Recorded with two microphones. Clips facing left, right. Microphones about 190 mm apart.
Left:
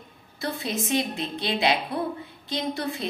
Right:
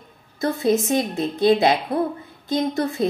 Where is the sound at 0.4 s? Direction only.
45° right (ahead or behind).